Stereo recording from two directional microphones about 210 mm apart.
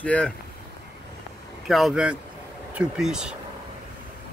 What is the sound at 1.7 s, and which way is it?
Speech, centre (ahead or behind).